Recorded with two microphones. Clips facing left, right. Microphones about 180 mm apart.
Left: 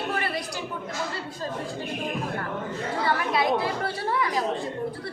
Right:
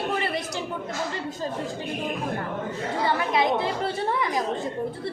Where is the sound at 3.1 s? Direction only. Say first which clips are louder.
Right 1 dB; 20° right (ahead or behind).